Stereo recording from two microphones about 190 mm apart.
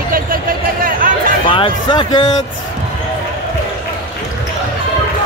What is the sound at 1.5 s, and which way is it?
Speech, 25° left (ahead or behind).